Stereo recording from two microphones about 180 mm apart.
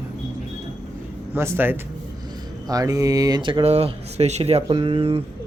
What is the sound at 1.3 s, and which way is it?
Speech, 15° right (ahead or behind).